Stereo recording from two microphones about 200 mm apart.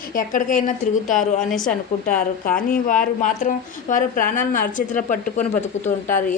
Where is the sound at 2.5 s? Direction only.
45° left (ahead or behind).